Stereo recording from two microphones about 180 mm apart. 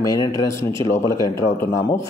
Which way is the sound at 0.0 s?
20° left (ahead or behind).